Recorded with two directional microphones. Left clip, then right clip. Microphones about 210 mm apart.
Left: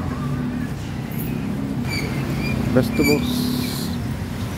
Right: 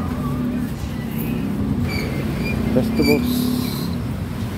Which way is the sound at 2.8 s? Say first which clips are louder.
Left 2 dB; 20° left (ahead or behind).